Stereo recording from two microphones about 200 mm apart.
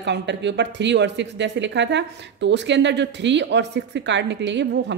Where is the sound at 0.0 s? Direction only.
60° right (ahead or behind).